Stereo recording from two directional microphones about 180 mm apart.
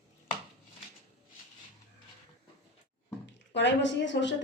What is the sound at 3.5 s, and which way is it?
Speech, 80° left.